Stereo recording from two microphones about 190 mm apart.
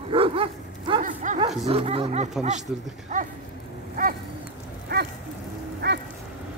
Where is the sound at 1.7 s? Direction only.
30° right (ahead or behind).